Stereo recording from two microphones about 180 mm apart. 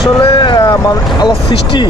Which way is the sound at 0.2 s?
25° left (ahead or behind).